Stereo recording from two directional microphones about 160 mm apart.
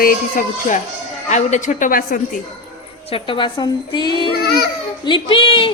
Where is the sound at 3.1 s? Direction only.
30° left (ahead or behind).